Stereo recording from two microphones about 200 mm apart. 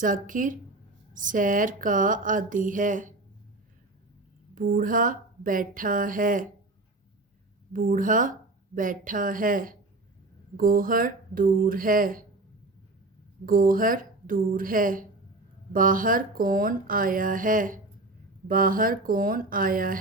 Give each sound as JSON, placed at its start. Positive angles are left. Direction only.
{"t": 0.0, "sound": "speech", "side_deg": -40}
{"t": 4.5, "sound": "speech", "side_deg": -45}
{"t": 7.7, "sound": "speech", "side_deg": -40}
{"t": 13.4, "sound": "speech", "side_deg": -45}